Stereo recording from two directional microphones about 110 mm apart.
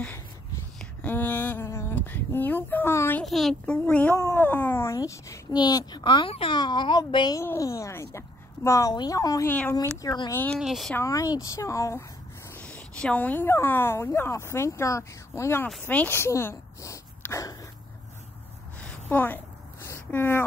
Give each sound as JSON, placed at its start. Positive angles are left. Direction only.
{"t": 1.0, "sound": "speech", "side_deg": 15}
{"t": 3.3, "sound": "a child's voice", "side_deg": 0}
{"t": 7.3, "sound": "a child's voice", "side_deg": 30}
{"t": 9.5, "sound": "speech", "side_deg": 15}
{"t": 10.0, "sound": "a child's voice", "side_deg": 40}
{"t": 10.3, "sound": "speech", "side_deg": 15}
{"t": 10.6, "sound": "speech", "side_deg": 0}
{"t": 11.0, "sound": "a child's voice", "side_deg": 30}
{"t": 12.5, "sound": "speech", "side_deg": 10}
{"t": 18.8, "sound": "a sound", "side_deg": 15}
{"t": 20.1, "sound": "speech", "side_deg": 20}